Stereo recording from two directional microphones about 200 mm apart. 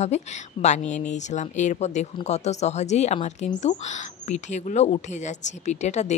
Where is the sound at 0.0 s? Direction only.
35° left (ahead or behind).